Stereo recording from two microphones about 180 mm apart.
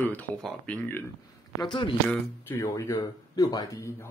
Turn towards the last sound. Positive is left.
turn(degrees=20)  # may be behind; listen again after turning